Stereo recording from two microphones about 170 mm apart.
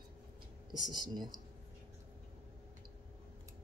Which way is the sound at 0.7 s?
25° right (ahead or behind).